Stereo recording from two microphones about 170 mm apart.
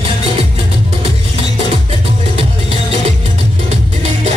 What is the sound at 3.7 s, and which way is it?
Music, 40° right (ahead or behind).